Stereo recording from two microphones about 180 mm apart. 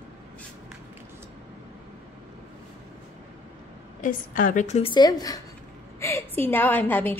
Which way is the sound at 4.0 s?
50° left (ahead or behind).